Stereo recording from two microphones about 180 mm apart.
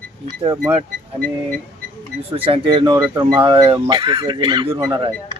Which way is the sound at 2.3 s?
30° right (ahead or behind).